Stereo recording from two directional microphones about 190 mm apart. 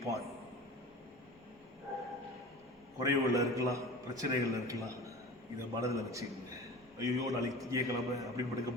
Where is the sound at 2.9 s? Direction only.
15° right (ahead or behind).